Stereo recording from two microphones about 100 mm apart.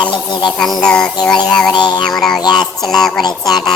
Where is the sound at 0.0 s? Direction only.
55° left (ahead or behind).